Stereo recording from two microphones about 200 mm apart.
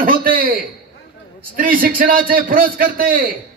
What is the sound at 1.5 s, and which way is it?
Music, 45° right (ahead or behind).